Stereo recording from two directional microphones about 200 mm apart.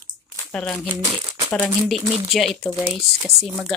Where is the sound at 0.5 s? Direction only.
5° left (ahead or behind).